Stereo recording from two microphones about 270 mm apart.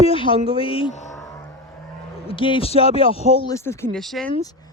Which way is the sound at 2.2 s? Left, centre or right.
Centre.